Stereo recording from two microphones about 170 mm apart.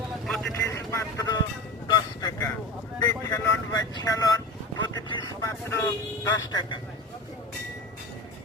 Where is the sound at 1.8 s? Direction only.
25° left (ahead or behind).